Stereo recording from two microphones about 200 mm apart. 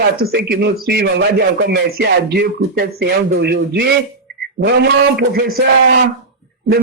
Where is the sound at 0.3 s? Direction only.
50° right (ahead or behind).